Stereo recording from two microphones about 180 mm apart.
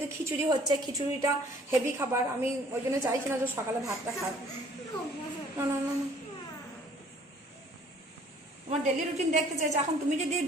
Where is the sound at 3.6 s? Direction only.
15° right (ahead or behind).